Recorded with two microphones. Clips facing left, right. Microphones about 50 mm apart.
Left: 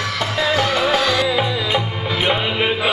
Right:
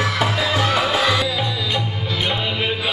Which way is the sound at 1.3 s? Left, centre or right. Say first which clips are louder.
Left 4 dB; centre.